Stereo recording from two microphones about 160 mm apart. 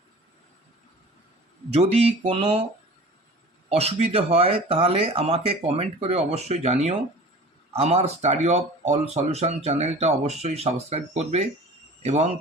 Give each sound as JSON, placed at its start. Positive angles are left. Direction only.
{"t": 1.7, "sound": "speech", "side_deg": -40}
{"t": 3.7, "sound": "speech", "side_deg": -40}